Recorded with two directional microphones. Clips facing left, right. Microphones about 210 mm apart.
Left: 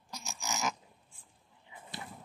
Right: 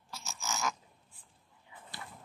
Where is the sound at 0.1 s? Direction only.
15° left (ahead or behind).